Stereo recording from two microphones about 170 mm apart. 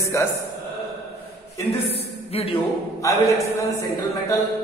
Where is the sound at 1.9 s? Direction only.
35° left (ahead or behind).